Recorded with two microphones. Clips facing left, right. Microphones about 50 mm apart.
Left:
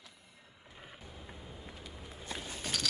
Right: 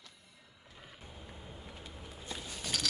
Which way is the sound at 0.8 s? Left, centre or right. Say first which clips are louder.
Left 1 dB; left.